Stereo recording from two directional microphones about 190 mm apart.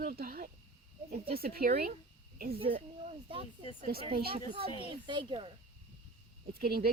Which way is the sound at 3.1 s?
30° right (ahead or behind).